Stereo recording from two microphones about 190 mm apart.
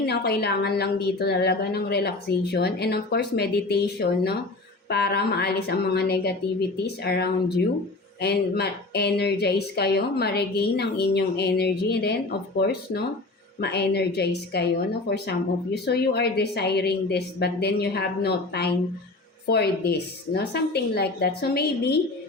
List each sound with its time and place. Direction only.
0.0 s speech: 55° left (ahead or behind)